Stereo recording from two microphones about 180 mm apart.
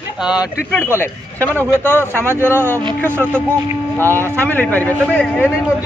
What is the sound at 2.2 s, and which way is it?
Speech, 15° right (ahead or behind).